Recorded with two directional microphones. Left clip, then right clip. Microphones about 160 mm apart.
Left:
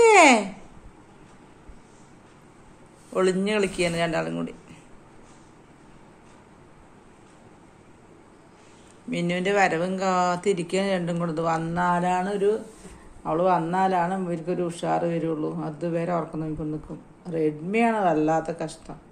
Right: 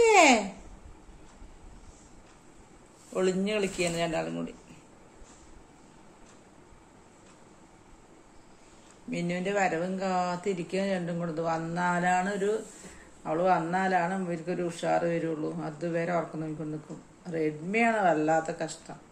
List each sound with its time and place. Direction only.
0.0 s a sound: 5° left (ahead or behind)
3.1 s speech: centre (ahead or behind)
9.1 s speech: 5° left (ahead or behind)